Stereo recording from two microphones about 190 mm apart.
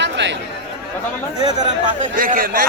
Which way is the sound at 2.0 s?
45° right (ahead or behind).